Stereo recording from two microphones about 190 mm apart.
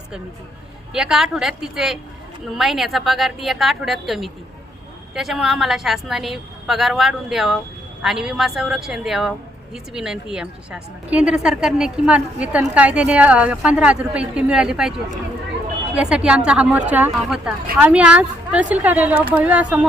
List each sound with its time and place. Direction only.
0.9 s a woman's voice: 5° right (ahead or behind)
16.0 s a woman's voice: 5° right (ahead or behind)